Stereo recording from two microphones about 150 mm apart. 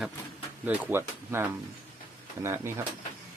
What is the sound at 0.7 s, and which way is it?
Speech, 15° right (ahead or behind).